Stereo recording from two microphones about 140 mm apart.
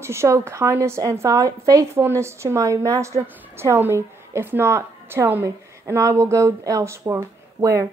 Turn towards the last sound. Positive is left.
turn(degrees=-20)  # may be behind; listen again after turning